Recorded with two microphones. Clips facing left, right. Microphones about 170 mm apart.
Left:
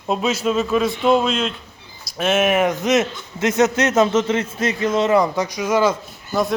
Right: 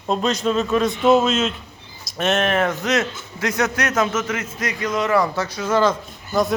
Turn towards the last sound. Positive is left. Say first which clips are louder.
# right 1 dB
turn(degrees=0)  # may be behind; listen again after turning